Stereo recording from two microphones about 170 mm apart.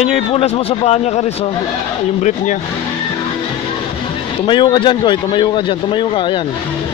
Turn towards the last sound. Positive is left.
turn(degrees=30)  # may be behind; listen again after turning